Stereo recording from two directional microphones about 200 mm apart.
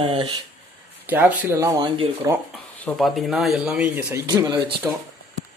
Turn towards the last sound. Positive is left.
turn(degrees=-20)  # may be behind; listen again after turning